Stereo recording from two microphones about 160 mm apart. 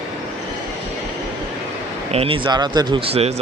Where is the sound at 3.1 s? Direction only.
40° right (ahead or behind).